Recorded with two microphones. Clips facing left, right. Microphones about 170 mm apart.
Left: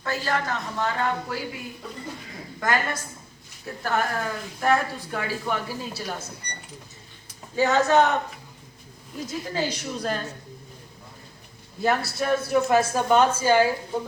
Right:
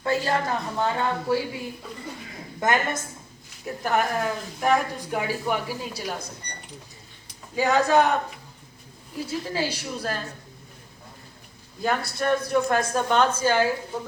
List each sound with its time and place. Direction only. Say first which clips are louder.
0.0 s a woman's voice: right 3 dB; 25° right (ahead or behind)
7.5 s speech: even; 10° right (ahead or behind)
9.1 s a woman's voice: right 1 dB; 5° right (ahead or behind)
11.8 s a woman's voice: left 1 dB; 5° left (ahead or behind)